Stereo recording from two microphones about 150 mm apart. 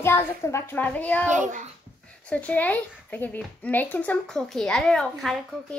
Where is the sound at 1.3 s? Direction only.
55° right (ahead or behind).